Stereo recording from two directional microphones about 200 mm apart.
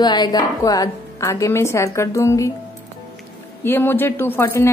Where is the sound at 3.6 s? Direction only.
10° left (ahead or behind).